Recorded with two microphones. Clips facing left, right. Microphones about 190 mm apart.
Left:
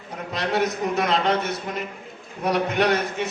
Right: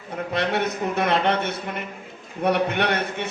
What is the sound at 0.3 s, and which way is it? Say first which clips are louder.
A man's voice: left 1 dB; 60° right (ahead or behind).